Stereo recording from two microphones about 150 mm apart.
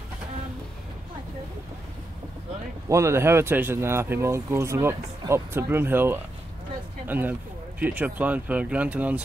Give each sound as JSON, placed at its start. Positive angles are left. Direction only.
{"t": 2.9, "sound": "speech", "side_deg": -20}